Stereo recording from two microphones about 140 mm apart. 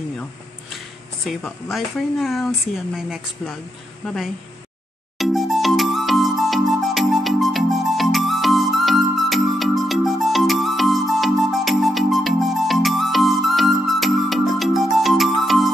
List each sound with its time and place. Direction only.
1.2 s speech: centre (ahead or behind)
5.2 s music: centre (ahead or behind)